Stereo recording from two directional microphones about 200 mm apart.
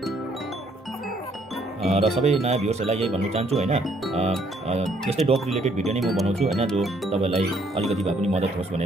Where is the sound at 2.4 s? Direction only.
35° right (ahead or behind).